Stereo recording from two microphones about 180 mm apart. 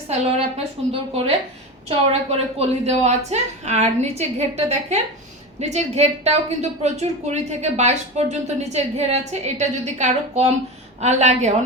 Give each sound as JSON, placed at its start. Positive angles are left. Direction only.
{"t": 0.1, "sound": "a woman's voice", "side_deg": -35}
{"t": 1.9, "sound": "a woman's voice", "side_deg": -35}